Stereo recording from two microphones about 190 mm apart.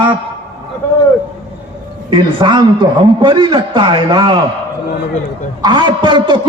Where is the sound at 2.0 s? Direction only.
25° right (ahead or behind).